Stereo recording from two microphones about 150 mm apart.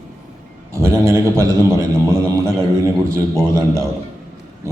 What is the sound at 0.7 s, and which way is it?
A man's voice, 20° right (ahead or behind).